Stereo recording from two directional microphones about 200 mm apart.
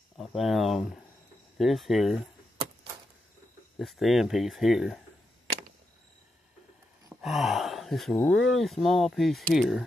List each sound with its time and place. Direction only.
0.2 s speech: centre (ahead or behind)
3.7 s speech: centre (ahead or behind)
7.2 s a sound: centre (ahead or behind)
8.2 s speech: centre (ahead or behind)